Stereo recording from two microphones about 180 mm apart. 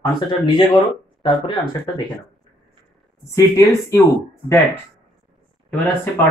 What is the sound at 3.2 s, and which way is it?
Speech, 15° left (ahead or behind).